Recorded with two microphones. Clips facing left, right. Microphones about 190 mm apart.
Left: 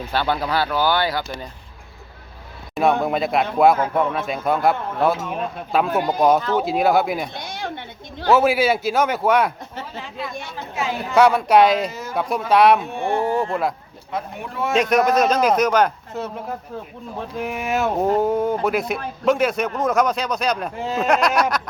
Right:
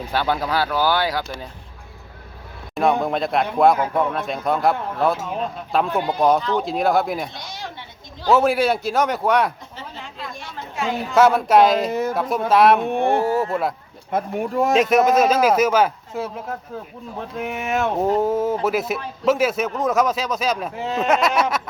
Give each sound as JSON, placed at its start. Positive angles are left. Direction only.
{"t": 0.1, "sound": "speech", "side_deg": -5}
{"t": 3.0, "sound": "a man's voice", "side_deg": 5}
{"t": 7.3, "sound": "speech", "side_deg": 55}
{"t": 8.3, "sound": "a man's voice", "side_deg": 0}
{"t": 10.8, "sound": "a man's voice", "side_deg": 0}
{"t": 11.9, "sound": "speech", "side_deg": -60}
{"t": 12.1, "sound": "a man's voice", "side_deg": 0}
{"t": 12.8, "sound": "speech", "side_deg": -55}
{"t": 13.2, "sound": "a sound", "side_deg": -5}
{"t": 14.1, "sound": "speech", "side_deg": -50}
{"t": 14.8, "sound": "a man's voice", "side_deg": 0}